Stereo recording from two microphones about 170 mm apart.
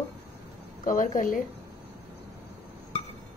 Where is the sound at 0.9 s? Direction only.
50° left (ahead or behind).